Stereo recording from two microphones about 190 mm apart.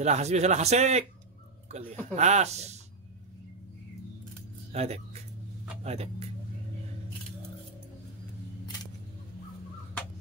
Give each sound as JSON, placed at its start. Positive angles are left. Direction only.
{"t": 0.0, "sound": "a man's voice", "side_deg": -35}
{"t": 4.7, "sound": "a man's voice", "side_deg": -35}